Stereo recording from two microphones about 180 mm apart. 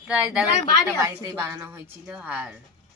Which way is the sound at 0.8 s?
15° right (ahead or behind).